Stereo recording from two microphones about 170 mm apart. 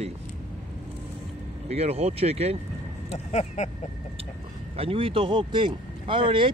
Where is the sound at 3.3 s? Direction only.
40° left (ahead or behind).